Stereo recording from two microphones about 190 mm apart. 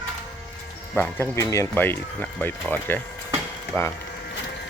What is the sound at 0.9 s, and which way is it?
Speech, 10° left (ahead or behind).